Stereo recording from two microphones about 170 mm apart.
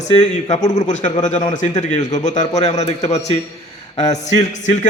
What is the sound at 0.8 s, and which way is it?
A man's voice, 45° left (ahead or behind).